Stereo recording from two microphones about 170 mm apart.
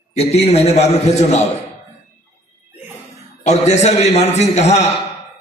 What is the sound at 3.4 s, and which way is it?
A man's voice, 40° left (ahead or behind).